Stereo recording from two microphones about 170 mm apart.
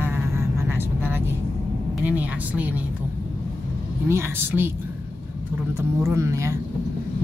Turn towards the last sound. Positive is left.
turn(degrees=-15)  # may be behind; listen again after turning